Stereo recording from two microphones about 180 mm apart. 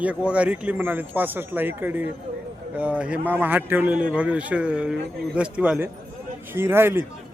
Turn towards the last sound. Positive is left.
turn(degrees=-10)  # may be behind; listen again after turning